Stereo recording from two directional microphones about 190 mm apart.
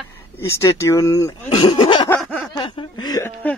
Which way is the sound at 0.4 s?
15° left (ahead or behind).